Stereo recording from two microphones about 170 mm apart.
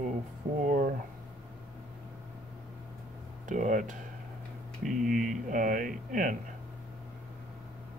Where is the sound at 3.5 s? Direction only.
50° right (ahead or behind).